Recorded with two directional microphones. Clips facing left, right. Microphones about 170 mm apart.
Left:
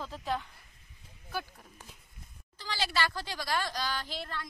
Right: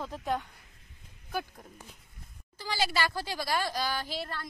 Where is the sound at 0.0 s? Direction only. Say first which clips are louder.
Right 3 dB; 15° right (ahead or behind).